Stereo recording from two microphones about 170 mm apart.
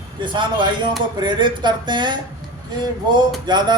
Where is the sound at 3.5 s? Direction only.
25° right (ahead or behind).